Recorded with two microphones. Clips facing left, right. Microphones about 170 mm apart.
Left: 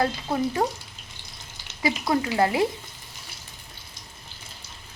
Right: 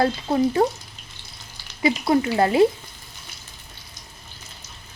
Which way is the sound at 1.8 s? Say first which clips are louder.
Right 5 dB; 25° right (ahead or behind).